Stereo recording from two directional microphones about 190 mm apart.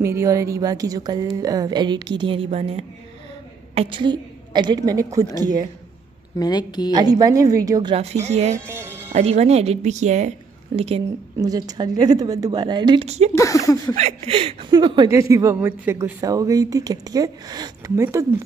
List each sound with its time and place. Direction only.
0.0 s a woman's voice: 15° right (ahead or behind)
6.3 s speech: 20° left (ahead or behind)
6.9 s a woman's voice: 20° right (ahead or behind)
7.9 s speech: 35° right (ahead or behind)
8.6 s speech: 15° right (ahead or behind)
9.1 s speech: 35° right (ahead or behind)
11.3 s a woman's voice: 20° right (ahead or behind); by 13.3 s 35° right (ahead or behind)
13.3 s speech: 15° left (ahead or behind)
13.9 s a woman's voice: 35° right (ahead or behind); by 18.2 s 15° right (ahead or behind)